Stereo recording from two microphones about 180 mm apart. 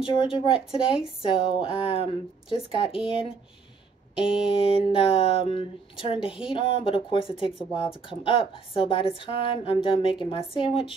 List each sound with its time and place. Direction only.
0.0 s speech: 30° left (ahead or behind)